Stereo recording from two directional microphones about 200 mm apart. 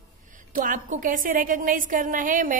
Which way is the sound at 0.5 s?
40° right (ahead or behind).